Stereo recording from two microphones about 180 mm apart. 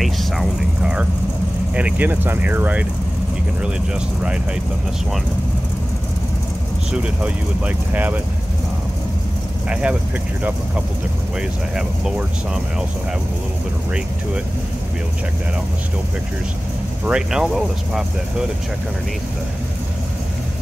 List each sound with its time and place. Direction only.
0.0 s vehicle: centre (ahead or behind)
1.8 s speech: 10° right (ahead or behind)
6.9 s speech: 5° right (ahead or behind)
9.7 s speech: 5° right (ahead or behind)
11.7 s speech: 5° right (ahead or behind)
17.0 s speech: 5° right (ahead or behind)